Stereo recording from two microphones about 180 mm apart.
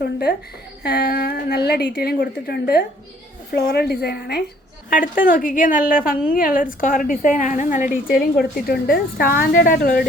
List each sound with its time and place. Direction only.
0.0 s a sound: 65° left (ahead or behind)
0.8 s a woman's voice: 65° left (ahead or behind)
4.9 s a woman's voice: 50° left (ahead or behind)